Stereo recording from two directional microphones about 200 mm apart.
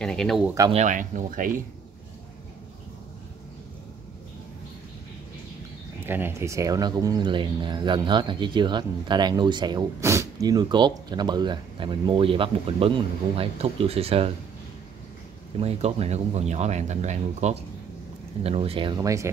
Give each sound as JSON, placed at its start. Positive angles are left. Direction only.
{"t": 0.0, "sound": "speech", "side_deg": 5}
{"t": 0.6, "sound": "speech", "side_deg": -25}
{"t": 0.8, "sound": "speech", "side_deg": -40}
{"t": 6.0, "sound": "speech", "side_deg": -10}
{"t": 15.6, "sound": "speech", "side_deg": -30}